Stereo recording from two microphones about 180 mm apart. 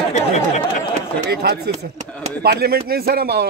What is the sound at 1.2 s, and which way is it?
A man's voice, 65° right (ahead or behind).